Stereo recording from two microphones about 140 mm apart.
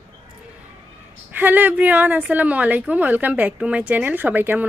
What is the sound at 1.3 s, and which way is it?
A woman's voice, 15° right (ahead or behind).